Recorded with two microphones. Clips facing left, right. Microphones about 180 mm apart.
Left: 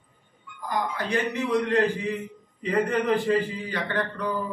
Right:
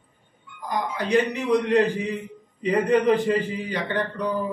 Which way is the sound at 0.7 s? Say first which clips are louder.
Right 3 dB; 15° right (ahead or behind).